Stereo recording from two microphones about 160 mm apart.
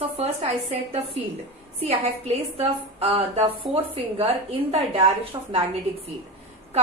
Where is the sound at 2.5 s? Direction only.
40° right (ahead or behind).